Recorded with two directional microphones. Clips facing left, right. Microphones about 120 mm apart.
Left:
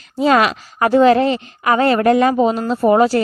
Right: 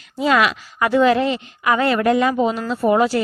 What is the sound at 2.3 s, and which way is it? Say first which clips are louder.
Speech: left 4 dB; 35° left (ahead or behind).